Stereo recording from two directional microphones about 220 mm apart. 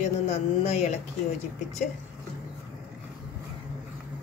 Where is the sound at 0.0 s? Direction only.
30° left (ahead or behind).